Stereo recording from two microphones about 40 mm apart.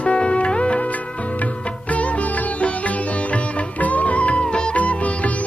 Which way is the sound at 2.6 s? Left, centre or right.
Left.